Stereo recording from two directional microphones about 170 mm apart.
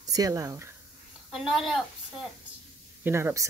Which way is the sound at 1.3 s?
Centre (ahead or behind).